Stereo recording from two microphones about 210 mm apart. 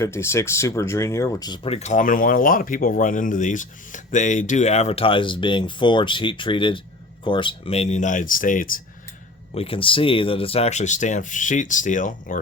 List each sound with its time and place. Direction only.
0.0 s speech: 10° left (ahead or behind); by 8.8 s 40° left (ahead or behind)
9.6 s speech: 25° left (ahead or behind)